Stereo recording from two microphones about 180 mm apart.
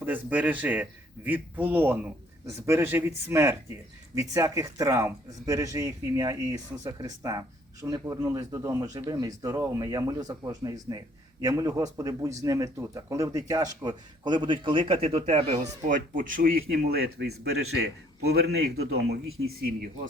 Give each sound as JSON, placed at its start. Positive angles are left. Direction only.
{"t": 0.0, "sound": "a man's voice", "side_deg": -10}